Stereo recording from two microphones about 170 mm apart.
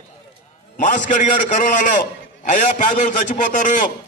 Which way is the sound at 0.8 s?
50° left (ahead or behind).